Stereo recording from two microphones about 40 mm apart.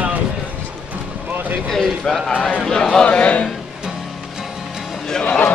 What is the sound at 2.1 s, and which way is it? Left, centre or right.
Speech, centre.